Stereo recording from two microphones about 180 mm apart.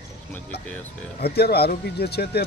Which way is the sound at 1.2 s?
60° left (ahead or behind).